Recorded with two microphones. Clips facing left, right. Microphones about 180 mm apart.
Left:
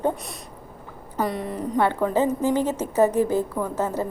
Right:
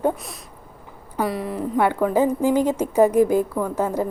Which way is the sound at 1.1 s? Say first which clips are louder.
Right 2 dB; 5° right (ahead or behind).